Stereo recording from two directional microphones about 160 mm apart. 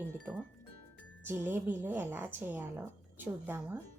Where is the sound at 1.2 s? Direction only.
10° right (ahead or behind).